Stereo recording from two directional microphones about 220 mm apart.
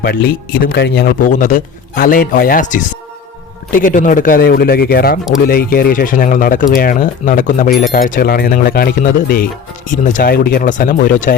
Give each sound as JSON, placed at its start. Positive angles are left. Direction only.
{"t": 0.0, "sound": "a man's voice", "side_deg": 45}